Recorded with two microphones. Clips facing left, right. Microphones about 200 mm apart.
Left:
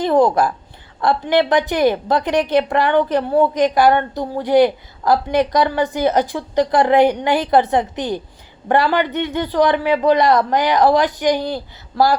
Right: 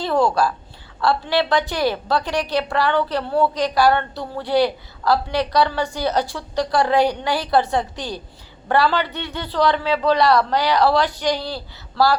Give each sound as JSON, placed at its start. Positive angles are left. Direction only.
{"t": 0.0, "sound": "a woman's voice", "side_deg": 20}